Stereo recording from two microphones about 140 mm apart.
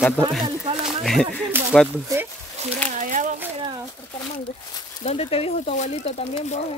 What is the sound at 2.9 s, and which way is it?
Speech, 65° right (ahead or behind).